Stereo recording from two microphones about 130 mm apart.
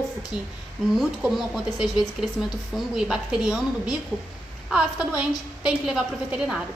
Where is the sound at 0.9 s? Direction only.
Centre (ahead or behind).